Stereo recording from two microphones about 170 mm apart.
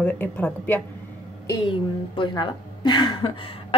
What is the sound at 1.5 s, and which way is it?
A woman's voice, 30° left (ahead or behind).